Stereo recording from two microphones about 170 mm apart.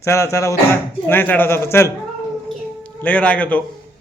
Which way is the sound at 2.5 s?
5° left (ahead or behind).